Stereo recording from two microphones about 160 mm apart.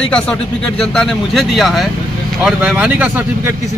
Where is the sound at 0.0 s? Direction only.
5° left (ahead or behind).